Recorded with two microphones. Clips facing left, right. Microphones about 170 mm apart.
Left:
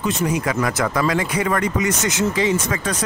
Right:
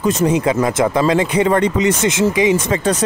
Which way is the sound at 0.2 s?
25° right (ahead or behind).